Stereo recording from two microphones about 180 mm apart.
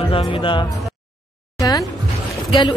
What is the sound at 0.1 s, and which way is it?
Speech, 30° left (ahead or behind).